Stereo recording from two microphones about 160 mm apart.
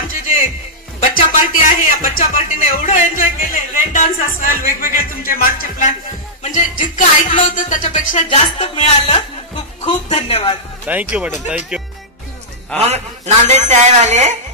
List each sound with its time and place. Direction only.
0.1 s music: 60° left (ahead or behind)
6.4 s a man's voice: 50° left (ahead or behind); by 10.6 s 35° left (ahead or behind)
10.9 s speech: 10° right (ahead or behind)
12.7 s a man's voice: 40° right (ahead or behind)